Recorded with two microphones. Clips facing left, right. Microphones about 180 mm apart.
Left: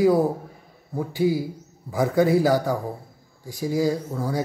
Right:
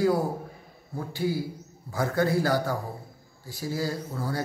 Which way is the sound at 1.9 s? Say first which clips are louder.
Left 6 dB; 15° left (ahead or behind).